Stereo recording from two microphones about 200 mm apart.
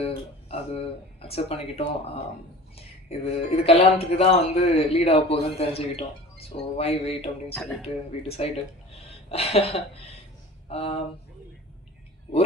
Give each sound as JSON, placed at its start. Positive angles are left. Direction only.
{"t": 0.0, "sound": "speech", "side_deg": 30}
{"t": 7.6, "sound": "speech", "side_deg": 0}
{"t": 8.4, "sound": "speech", "side_deg": 30}
{"t": 8.9, "sound": "a sound", "side_deg": 30}
{"t": 10.7, "sound": "speech", "side_deg": 30}